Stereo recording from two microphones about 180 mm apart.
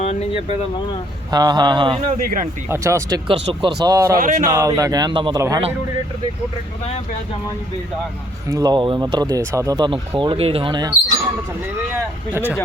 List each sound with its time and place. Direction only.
0.0 s speech: 35° left (ahead or behind)
1.3 s speech: 20° right (ahead or behind)
2.2 s speech: 50° right (ahead or behind)
2.6 s speech: 15° right (ahead or behind)
3.2 s speech: 30° right (ahead or behind)
4.2 s speech: 40° right (ahead or behind)
4.4 s speech: 20° right (ahead or behind)
8.4 s speech: 20° right (ahead or behind)
12.3 s speech: 10° right (ahead or behind)